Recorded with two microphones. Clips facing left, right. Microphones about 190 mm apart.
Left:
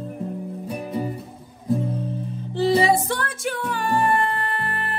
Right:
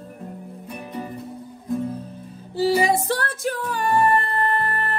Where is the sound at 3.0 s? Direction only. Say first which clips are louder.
Right 2 dB; 35° right (ahead or behind).